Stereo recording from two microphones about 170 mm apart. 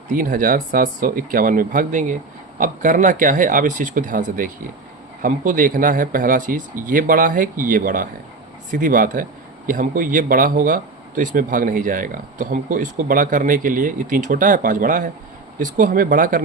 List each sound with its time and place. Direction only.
0.1 s speech: 50° right (ahead or behind)